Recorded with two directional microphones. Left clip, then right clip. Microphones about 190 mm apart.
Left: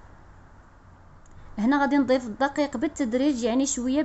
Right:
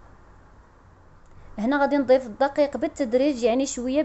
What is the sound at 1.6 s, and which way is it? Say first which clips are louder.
A woman's voice: right 1 dB; centre (ahead or behind).